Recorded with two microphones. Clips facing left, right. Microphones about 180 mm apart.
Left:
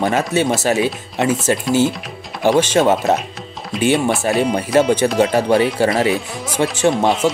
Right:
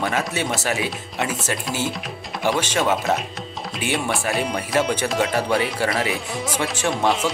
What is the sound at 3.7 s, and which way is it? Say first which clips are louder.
Speech: left 11 dB; centre (ahead or behind).